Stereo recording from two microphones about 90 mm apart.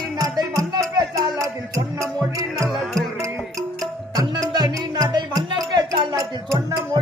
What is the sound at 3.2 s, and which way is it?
Music, 35° right (ahead or behind).